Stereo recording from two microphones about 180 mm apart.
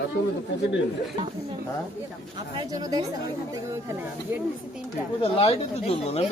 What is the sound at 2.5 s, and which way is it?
Speech, 20° right (ahead or behind).